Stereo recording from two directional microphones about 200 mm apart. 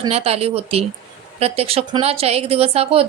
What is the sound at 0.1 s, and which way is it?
A woman's voice, 30° right (ahead or behind).